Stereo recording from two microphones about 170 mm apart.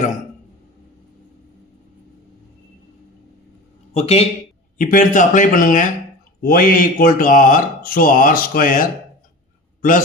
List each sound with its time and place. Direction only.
3.9 s speech: 35° left (ahead or behind)
4.8 s speech: 50° left (ahead or behind)